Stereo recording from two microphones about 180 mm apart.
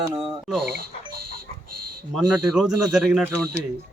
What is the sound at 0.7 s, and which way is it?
Speech, 55° right (ahead or behind).